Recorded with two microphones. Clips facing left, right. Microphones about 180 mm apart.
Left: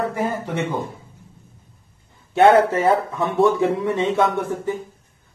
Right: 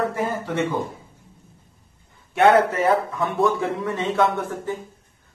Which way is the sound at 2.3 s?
30° left (ahead or behind).